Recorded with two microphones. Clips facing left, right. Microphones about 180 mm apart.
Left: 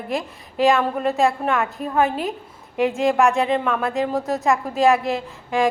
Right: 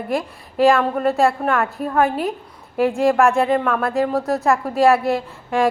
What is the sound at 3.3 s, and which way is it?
Speech, centre (ahead or behind).